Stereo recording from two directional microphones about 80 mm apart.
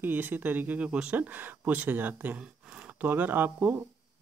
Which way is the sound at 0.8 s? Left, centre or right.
Centre.